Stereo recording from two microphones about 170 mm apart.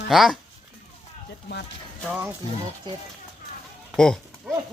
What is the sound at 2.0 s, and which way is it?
Speech, 5° right (ahead or behind).